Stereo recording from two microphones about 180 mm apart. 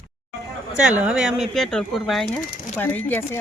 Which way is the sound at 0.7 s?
5° right (ahead or behind).